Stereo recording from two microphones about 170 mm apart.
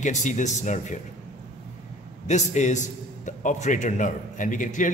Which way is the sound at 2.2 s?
45° left (ahead or behind).